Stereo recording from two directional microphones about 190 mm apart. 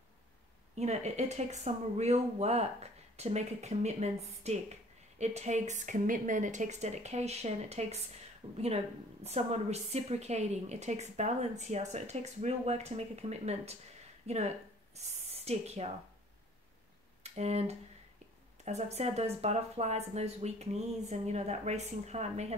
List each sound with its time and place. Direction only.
0.7 s a woman's voice: 35° right (ahead or behind)
9.2 s a woman's voice: 35° right (ahead or behind)
17.2 s a woman's voice: 35° right (ahead or behind)